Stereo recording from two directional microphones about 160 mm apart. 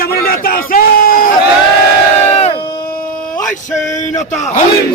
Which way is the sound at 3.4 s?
Centre (ahead or behind).